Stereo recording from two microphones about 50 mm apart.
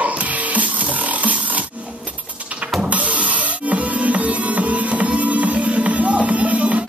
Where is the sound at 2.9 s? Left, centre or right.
Right.